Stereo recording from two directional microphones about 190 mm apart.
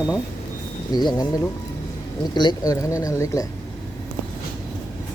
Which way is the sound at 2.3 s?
25° left (ahead or behind).